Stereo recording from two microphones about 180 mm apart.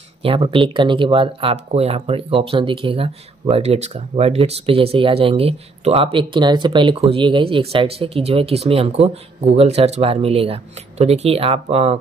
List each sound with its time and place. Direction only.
0.2 s speech: 30° right (ahead or behind)